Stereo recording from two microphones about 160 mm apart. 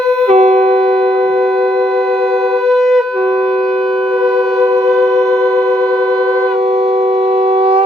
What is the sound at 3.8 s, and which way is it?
Wind instrument, 5° left (ahead or behind).